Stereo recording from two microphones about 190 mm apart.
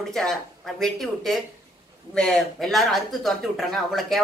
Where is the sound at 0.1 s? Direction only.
Centre (ahead or behind).